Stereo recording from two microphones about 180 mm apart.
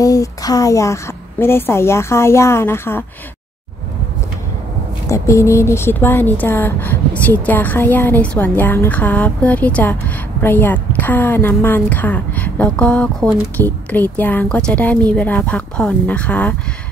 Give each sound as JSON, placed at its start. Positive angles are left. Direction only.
{"t": 0.0, "sound": "a woman's voice", "side_deg": 20}
{"t": 5.0, "sound": "a woman's voice", "side_deg": 15}